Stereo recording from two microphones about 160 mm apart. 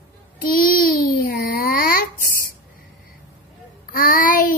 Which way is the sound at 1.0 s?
70° left (ahead or behind).